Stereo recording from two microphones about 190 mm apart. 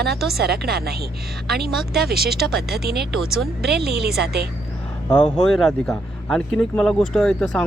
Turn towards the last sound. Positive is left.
turn(degrees=5)  # may be behind; listen again after turning